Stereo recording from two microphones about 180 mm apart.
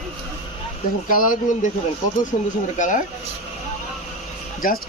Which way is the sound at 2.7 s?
45° left (ahead or behind).